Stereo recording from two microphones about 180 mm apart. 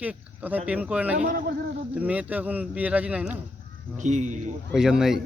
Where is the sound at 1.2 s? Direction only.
55° right (ahead or behind).